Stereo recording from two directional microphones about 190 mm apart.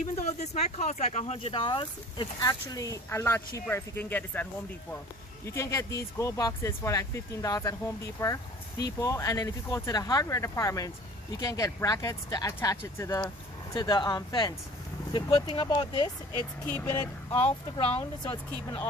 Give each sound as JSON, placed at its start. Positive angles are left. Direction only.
{"t": 0.0, "sound": "speech", "side_deg": 35}
{"t": 16.6, "sound": "speech", "side_deg": 10}
{"t": 17.3, "sound": "speech", "side_deg": 30}